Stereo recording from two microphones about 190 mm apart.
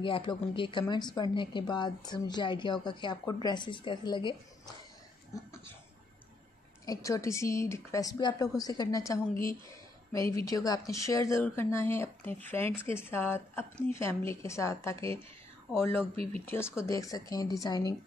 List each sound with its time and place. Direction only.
0.0 s a woman's voice: 25° left (ahead or behind)
6.9 s speech: 15° left (ahead or behind)
16.4 s speech: 15° left (ahead or behind)